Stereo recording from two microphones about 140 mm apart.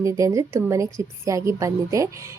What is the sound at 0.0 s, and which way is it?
A woman's voice, 20° right (ahead or behind).